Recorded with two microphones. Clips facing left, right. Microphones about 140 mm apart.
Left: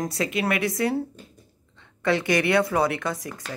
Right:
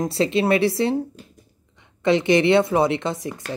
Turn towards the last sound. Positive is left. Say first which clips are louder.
# right 4 dB
turn(degrees=-25)  # may be behind; listen again after turning